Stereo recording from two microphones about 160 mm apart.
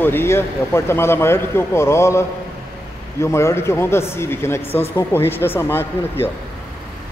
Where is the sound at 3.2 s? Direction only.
15° left (ahead or behind).